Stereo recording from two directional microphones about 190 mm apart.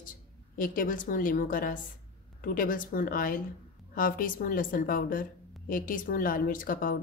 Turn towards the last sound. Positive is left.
turn(degrees=45)  # may be behind; listen again after turning